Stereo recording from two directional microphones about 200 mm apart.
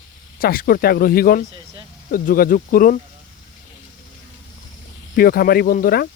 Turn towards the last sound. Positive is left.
turn(degrees=50)  # may be behind; listen again after turning